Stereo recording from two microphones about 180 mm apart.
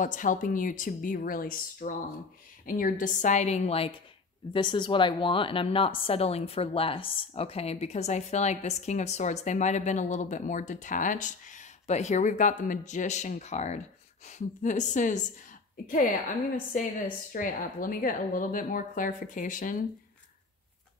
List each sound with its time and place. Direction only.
0.0 s a woman's voice: 45° left (ahead or behind)
16.7 s a woman's voice: 45° left (ahead or behind)